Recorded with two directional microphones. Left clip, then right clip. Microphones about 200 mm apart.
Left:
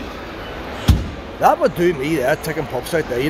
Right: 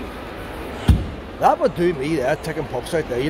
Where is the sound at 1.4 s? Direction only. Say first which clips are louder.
Left 2 dB; centre (ahead or behind).